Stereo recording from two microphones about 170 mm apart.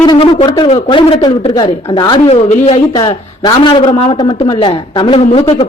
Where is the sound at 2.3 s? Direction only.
40° left (ahead or behind).